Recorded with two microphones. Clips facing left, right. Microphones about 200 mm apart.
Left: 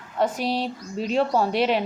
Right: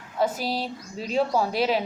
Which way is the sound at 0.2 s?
5° right (ahead or behind).